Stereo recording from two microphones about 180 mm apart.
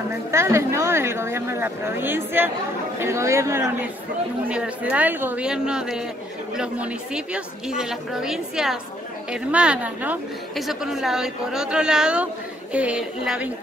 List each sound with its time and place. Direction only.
0.3 s a woman's voice: 15° right (ahead or behind)